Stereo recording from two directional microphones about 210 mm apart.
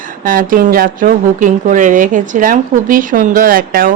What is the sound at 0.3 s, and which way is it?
Speech, 40° right (ahead or behind).